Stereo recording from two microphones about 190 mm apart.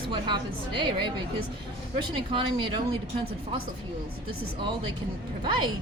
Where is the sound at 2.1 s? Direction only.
25° right (ahead or behind).